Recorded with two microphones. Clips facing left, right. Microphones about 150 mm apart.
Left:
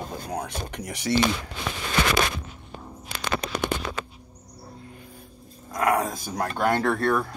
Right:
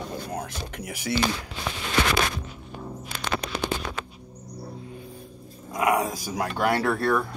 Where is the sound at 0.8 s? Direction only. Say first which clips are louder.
Left 2 dB; 10° right (ahead or behind).